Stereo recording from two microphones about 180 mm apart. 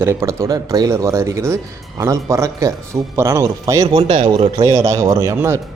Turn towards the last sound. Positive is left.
turn(degrees=-15)  # may be behind; listen again after turning